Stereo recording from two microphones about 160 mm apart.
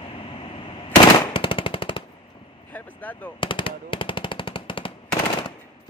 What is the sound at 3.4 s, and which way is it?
Machine gun, 30° left (ahead or behind).